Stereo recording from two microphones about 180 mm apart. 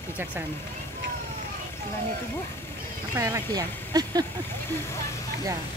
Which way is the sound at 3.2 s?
15° right (ahead or behind).